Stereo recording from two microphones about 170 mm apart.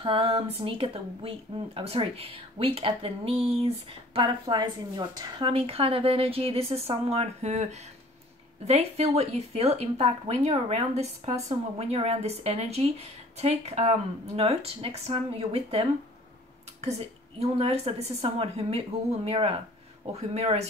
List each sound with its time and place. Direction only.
0.0 s a woman's voice: 30° right (ahead or behind)
17.4 s a woman's voice: 35° right (ahead or behind)